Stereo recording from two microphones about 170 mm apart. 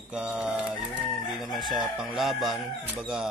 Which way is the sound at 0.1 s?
5° right (ahead or behind).